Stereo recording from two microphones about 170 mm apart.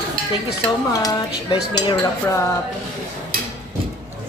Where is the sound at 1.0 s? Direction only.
25° left (ahead or behind).